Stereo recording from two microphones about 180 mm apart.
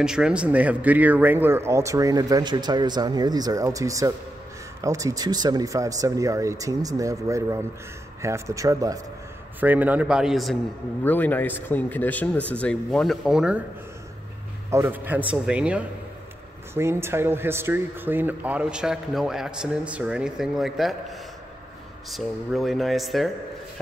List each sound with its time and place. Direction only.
0.0 s speech: 5° right (ahead or behind)
14.7 s speech: 10° right (ahead or behind)
22.1 s speech: centre (ahead or behind)